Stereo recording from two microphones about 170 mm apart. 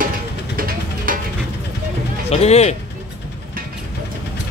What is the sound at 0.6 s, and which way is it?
Music, 55° right (ahead or behind).